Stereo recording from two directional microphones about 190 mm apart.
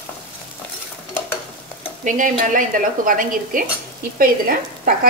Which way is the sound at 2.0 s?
45° right (ahead or behind).